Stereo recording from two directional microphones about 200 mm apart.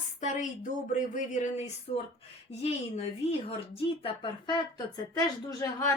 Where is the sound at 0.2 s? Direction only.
40° left (ahead or behind).